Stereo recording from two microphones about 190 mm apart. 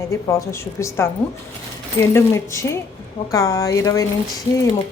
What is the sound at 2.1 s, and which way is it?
Speech, 15° left (ahead or behind).